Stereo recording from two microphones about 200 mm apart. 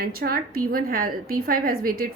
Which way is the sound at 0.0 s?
50° right (ahead or behind).